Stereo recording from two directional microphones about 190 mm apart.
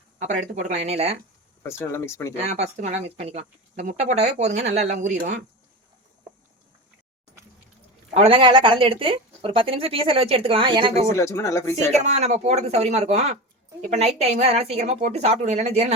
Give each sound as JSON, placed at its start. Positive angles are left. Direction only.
{"t": 0.2, "sound": "speech", "side_deg": -40}
{"t": 1.6, "sound": "speech", "side_deg": 15}
{"t": 2.5, "sound": "speech", "side_deg": -35}
{"t": 8.1, "sound": "speech", "side_deg": -30}
{"t": 11.1, "sound": "speech", "side_deg": 15}
{"t": 11.9, "sound": "speech", "side_deg": -35}